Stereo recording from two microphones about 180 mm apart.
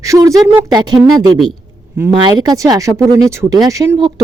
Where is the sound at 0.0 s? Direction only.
20° right (ahead or behind).